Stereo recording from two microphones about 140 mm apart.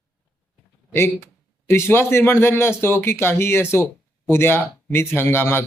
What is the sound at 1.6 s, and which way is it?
Speech, 20° left (ahead or behind).